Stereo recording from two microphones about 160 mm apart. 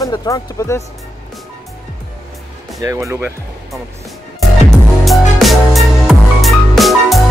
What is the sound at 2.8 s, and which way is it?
Speech, 20° right (ahead or behind).